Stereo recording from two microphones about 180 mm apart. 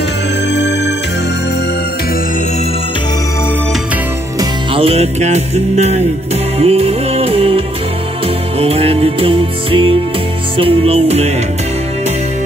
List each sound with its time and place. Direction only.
0.6 s music: 75° left (ahead or behind)
4.4 s music: 30° right (ahead or behind)